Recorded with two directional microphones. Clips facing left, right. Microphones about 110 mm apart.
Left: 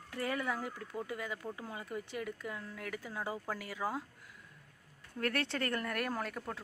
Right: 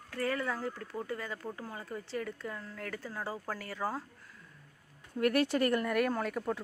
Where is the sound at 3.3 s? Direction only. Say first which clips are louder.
Right 1 dB; 10° right (ahead or behind).